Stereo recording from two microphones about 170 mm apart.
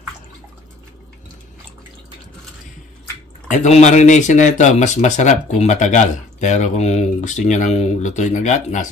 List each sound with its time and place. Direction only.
3.4 s speech: 45° left (ahead or behind)